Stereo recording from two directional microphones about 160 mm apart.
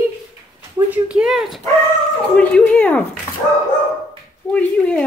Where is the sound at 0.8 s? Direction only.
5° right (ahead or behind).